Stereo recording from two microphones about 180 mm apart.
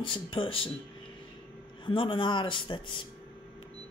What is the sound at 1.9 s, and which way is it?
Speech, 30° left (ahead or behind).